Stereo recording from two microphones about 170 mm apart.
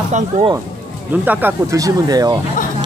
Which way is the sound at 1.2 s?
15° right (ahead or behind).